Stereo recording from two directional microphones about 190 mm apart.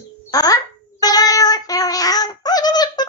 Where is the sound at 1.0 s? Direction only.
20° left (ahead or behind).